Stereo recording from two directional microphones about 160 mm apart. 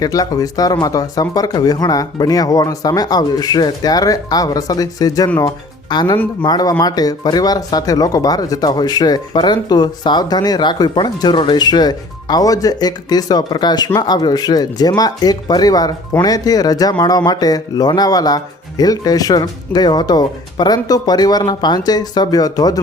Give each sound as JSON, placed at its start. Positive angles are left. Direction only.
{"t": 0.0, "sound": "speech", "side_deg": 20}